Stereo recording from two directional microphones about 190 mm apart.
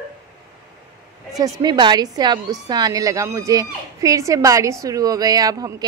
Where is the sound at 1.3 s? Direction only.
20° right (ahead or behind).